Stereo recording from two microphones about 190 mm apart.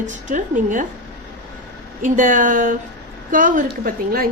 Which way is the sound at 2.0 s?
45° right (ahead or behind).